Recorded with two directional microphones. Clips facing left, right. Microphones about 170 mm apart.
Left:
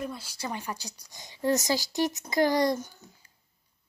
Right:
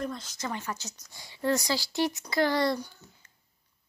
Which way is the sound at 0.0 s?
10° left (ahead or behind).